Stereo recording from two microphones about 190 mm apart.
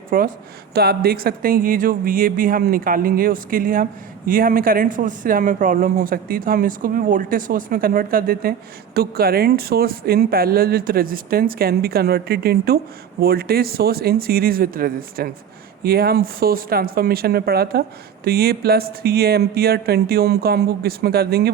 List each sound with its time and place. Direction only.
0.1 s speech: 45° right (ahead or behind)